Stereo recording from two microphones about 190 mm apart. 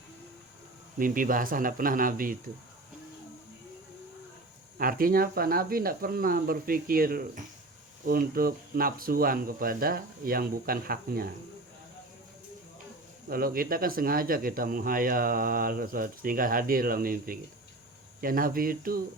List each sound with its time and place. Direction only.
0.9 s speech: 45° right (ahead or behind)
4.8 s speech: 50° right (ahead or behind)
13.2 s speech: 50° right (ahead or behind)